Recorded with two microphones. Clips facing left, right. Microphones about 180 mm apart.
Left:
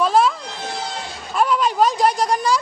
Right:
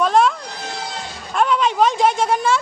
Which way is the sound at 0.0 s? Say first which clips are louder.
Right 1 dB; centre (ahead or behind).